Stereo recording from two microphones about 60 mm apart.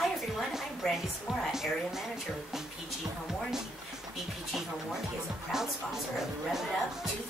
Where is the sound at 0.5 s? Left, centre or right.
Centre.